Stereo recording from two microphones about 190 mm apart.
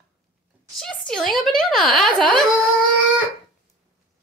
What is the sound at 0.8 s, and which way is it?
Speech, centre (ahead or behind).